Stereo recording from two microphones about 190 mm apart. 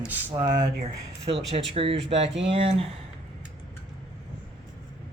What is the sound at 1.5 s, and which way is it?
Speech, 30° right (ahead or behind).